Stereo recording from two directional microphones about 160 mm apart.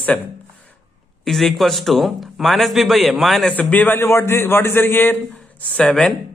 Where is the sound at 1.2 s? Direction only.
Centre (ahead or behind).